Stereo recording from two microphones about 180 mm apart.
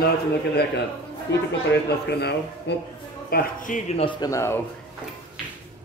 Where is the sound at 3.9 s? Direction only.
30° left (ahead or behind).